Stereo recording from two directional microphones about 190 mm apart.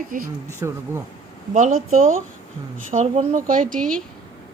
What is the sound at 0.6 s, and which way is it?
Speech, 15° right (ahead or behind).